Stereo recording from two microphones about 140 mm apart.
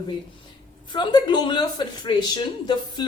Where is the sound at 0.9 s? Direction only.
30° left (ahead or behind).